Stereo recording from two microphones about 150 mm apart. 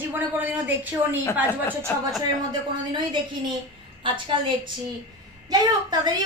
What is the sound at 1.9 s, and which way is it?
Speech, 10° left (ahead or behind).